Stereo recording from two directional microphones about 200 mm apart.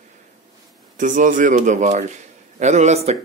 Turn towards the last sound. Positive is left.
turn(degrees=-35)  # may be behind; listen again after turning